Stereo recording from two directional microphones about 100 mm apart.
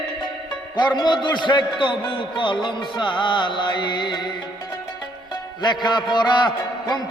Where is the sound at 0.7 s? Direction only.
45° left (ahead or behind).